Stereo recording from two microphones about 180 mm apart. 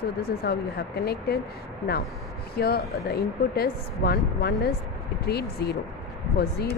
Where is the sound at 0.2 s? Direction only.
60° left (ahead or behind).